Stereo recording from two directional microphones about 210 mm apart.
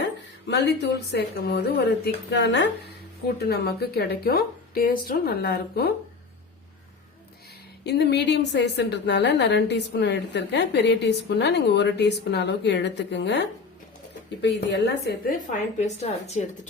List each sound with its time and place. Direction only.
0.0 s a woman's voice: 55° left (ahead or behind)
7.9 s a woman's voice: 55° left (ahead or behind)
15.4 s a woman's voice: 30° left (ahead or behind)